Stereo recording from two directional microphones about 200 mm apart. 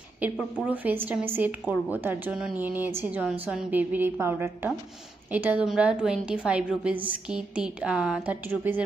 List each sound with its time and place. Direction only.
0.2 s a woman's voice: 5° right (ahead or behind)